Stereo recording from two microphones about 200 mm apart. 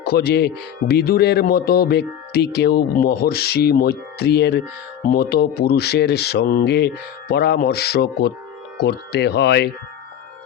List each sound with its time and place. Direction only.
0.0 s speech: 55° left (ahead or behind)